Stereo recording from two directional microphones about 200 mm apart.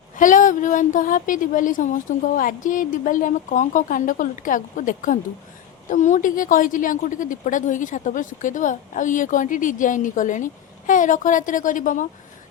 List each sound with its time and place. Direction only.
0.2 s a woman's voice: 40° left (ahead or behind)